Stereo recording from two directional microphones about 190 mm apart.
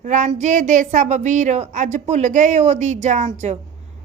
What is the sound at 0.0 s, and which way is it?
A woman's voice, 40° right (ahead or behind).